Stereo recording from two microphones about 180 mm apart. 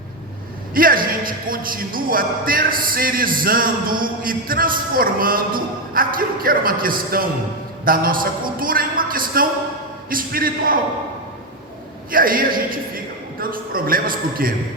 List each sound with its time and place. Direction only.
0.7 s a man's voice: 50° right (ahead or behind)
12.1 s a man's voice: 50° right (ahead or behind)